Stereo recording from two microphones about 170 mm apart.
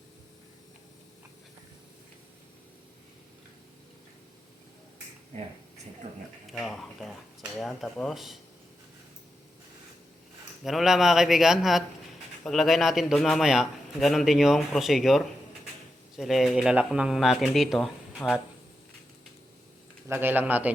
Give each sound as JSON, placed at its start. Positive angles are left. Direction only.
{"t": 6.0, "sound": "speech", "side_deg": -45}
{"t": 6.5, "sound": "a man's voice", "side_deg": 0}
{"t": 10.6, "sound": "a man's voice", "side_deg": 0}
{"t": 20.1, "sound": "speech", "side_deg": -10}